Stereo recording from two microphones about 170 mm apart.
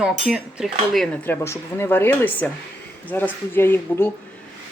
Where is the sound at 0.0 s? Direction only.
5° right (ahead or behind); by 4.1 s 10° left (ahead or behind).